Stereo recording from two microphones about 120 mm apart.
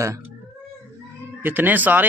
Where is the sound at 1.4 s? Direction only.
15° right (ahead or behind).